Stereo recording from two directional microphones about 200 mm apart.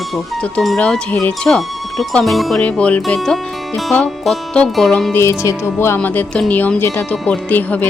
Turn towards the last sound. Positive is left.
turn(degrees=10)  # may be behind; listen again after turning